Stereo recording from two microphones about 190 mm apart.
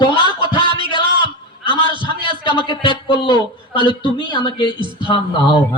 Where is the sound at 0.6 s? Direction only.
25° right (ahead or behind).